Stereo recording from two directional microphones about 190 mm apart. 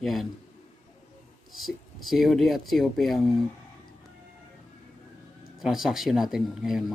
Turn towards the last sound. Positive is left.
turn(degrees=0)  # may be behind; listen again after turning